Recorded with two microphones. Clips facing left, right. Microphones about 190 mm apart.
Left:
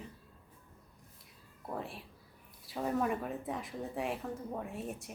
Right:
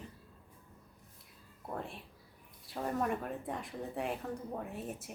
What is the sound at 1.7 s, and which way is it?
Speech, centre (ahead or behind).